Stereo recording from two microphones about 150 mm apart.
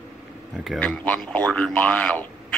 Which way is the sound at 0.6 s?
5° left (ahead or behind).